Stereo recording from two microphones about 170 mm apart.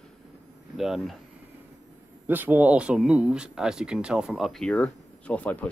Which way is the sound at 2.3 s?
10° right (ahead or behind).